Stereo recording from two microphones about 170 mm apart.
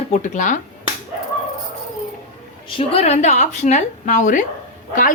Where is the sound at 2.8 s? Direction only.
35° left (ahead or behind).